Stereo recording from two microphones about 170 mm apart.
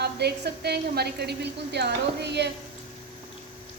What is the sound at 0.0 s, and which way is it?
A woman's voice, 75° right (ahead or behind).